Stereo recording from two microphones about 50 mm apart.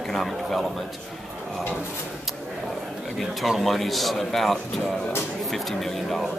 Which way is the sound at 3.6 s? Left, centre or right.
Centre.